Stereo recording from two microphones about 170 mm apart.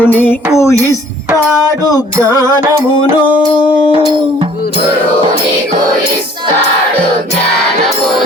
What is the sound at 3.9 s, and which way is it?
Music, 30° right (ahead or behind).